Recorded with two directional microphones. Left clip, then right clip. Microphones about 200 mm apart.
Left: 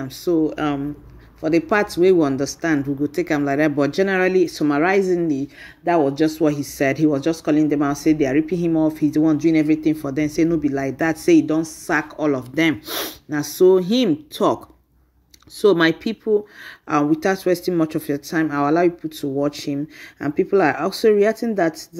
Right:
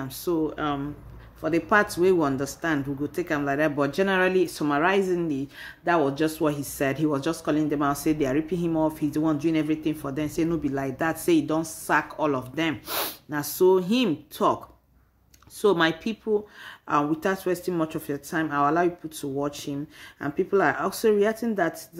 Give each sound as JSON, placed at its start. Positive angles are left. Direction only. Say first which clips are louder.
{"t": 0.0, "sound": "speech", "louder": "left 7 dB", "side_deg": 15}
{"t": 15.6, "sound": "speech", "louder": "left 6 dB", "side_deg": 20}